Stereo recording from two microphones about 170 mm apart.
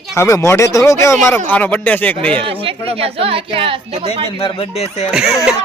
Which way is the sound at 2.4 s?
35° right (ahead or behind).